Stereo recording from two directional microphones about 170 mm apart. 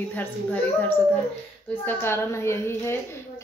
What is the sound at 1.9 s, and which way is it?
Speech, 15° left (ahead or behind).